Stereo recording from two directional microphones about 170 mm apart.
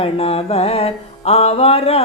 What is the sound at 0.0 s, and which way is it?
Music, 35° left (ahead or behind).